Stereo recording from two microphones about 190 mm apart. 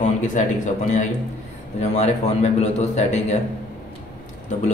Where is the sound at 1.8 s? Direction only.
35° left (ahead or behind).